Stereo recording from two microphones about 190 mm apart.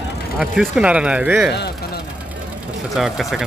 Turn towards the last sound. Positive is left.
turn(degrees=0)  # may be behind; listen again after turning